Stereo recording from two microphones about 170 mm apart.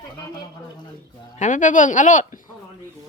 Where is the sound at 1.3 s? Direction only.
45° left (ahead or behind).